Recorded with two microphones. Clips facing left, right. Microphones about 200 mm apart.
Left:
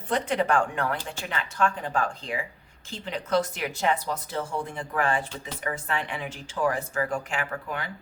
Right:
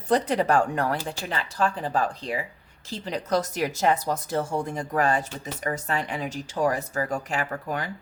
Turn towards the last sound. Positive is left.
turn(degrees=-40)  # may be behind; listen again after turning